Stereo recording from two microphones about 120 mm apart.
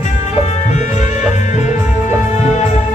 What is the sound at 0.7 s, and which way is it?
Music, 75° left (ahead or behind).